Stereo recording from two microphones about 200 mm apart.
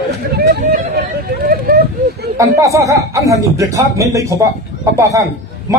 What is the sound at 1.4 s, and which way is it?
Vehicle, 45° right (ahead or behind).